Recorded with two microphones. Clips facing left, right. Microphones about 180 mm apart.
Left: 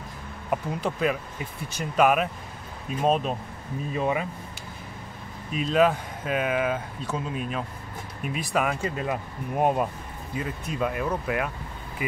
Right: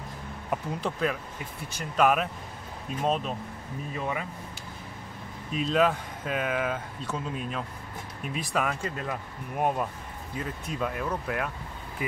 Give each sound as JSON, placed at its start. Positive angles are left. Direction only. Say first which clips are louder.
{"t": 0.5, "sound": "speech", "louder": "left 3 dB", "side_deg": 5}
{"t": 5.5, "sound": "speech", "louder": "left 3 dB", "side_deg": 5}
{"t": 10.3, "sound": "speech", "louder": "left 3 dB", "side_deg": 5}